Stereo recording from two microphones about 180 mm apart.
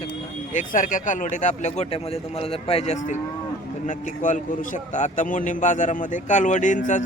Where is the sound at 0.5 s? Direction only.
45° left (ahead or behind).